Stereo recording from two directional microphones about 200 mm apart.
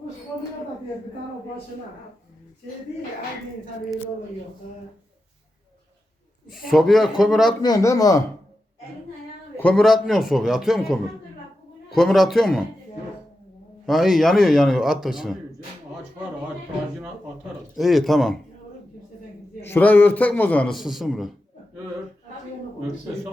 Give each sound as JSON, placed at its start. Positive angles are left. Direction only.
{"t": 6.5, "sound": "a man's voice", "side_deg": 0}
{"t": 7.6, "sound": "a man's voice", "side_deg": 15}
{"t": 9.6, "sound": "a man's voice", "side_deg": 5}
{"t": 13.8, "sound": "a man's voice", "side_deg": 0}
{"t": 17.7, "sound": "a man's voice", "side_deg": 0}
{"t": 19.6, "sound": "a man's voice", "side_deg": 10}